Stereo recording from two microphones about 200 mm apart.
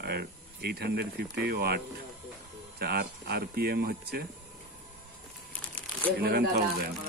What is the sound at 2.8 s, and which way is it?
Speech, 50° right (ahead or behind).